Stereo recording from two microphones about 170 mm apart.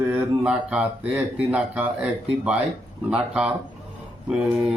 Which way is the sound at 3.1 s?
5° right (ahead or behind).